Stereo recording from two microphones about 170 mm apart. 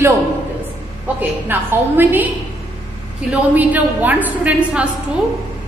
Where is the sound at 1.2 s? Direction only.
10° right (ahead or behind).